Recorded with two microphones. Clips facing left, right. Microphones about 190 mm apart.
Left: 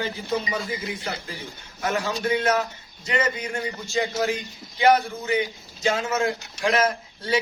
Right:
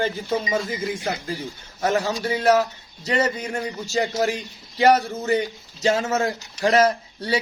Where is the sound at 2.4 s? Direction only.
35° right (ahead or behind).